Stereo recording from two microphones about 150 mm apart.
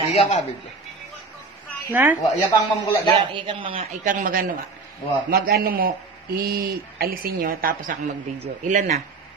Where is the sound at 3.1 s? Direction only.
35° right (ahead or behind).